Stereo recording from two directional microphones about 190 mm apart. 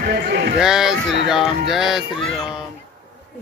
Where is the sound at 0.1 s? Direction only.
60° right (ahead or behind).